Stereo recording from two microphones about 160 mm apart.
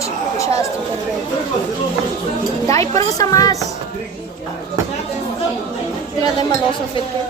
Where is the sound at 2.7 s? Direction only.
20° left (ahead or behind).